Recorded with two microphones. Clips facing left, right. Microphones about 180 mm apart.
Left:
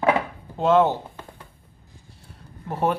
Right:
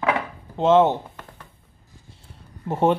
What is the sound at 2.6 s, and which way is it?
Speech, 25° right (ahead or behind).